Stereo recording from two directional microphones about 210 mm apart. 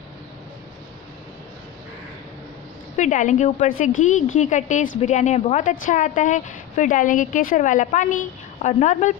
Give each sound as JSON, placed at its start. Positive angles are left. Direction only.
{"t": 3.0, "sound": "speech", "side_deg": 35}